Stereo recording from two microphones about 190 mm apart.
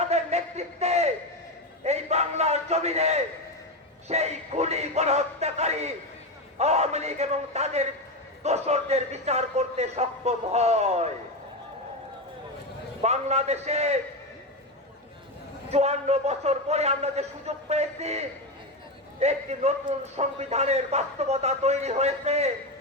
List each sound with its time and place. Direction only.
0.0 s a man's voice: 35° right (ahead or behind)
13.0 s a man's voice: 35° right (ahead or behind)
15.7 s a man's voice: 35° right (ahead or behind)